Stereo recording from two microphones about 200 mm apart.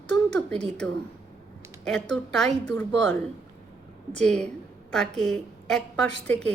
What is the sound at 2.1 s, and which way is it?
A woman's voice, centre (ahead or behind).